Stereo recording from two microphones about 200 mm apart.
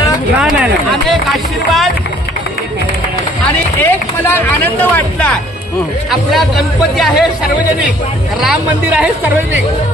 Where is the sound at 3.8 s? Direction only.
10° left (ahead or behind).